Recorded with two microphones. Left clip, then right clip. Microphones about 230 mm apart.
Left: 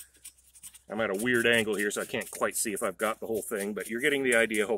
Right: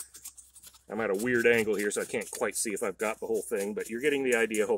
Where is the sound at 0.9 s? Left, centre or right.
Left.